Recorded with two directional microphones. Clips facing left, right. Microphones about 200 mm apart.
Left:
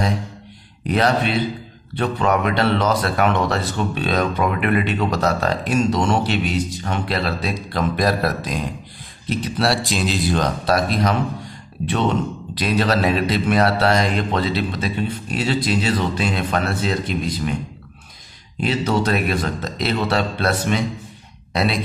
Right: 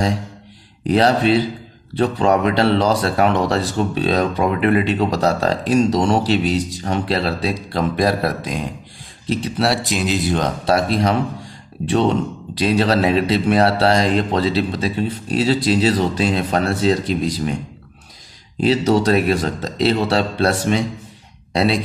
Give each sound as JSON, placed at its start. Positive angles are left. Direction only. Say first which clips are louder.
{"t": 0.8, "sound": "speech", "louder": "right 4 dB", "side_deg": -30}
{"t": 18.6, "sound": "speech", "louder": "right 5 dB", "side_deg": -35}